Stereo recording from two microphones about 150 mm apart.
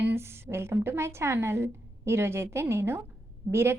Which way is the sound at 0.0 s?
15° right (ahead or behind).